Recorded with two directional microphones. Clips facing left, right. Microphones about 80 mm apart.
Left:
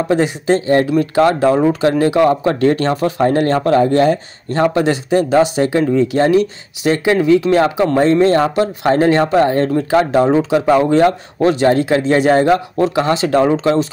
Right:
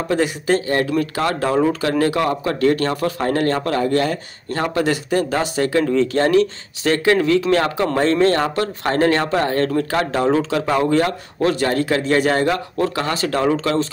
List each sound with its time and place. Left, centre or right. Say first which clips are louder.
0.1 s speech: left 2 dB; left